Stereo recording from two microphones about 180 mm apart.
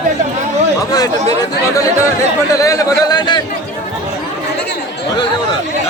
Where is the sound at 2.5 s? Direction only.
20° left (ahead or behind).